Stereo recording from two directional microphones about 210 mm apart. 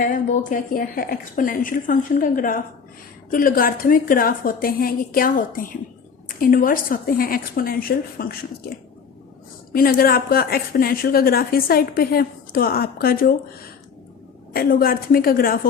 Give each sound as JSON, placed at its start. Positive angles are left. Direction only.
{"t": 0.0, "sound": "a woman's voice", "side_deg": 40}
{"t": 9.7, "sound": "a woman's voice", "side_deg": 45}